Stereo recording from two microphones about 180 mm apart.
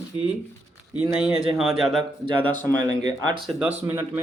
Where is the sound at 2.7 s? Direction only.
20° right (ahead or behind).